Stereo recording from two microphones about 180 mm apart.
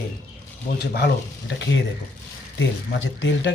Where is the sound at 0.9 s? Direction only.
70° left (ahead or behind).